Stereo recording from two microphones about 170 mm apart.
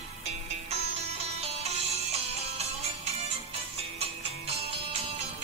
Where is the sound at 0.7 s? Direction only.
35° right (ahead or behind).